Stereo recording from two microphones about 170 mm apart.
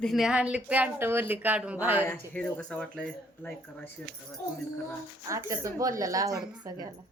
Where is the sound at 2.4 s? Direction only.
10° left (ahead or behind).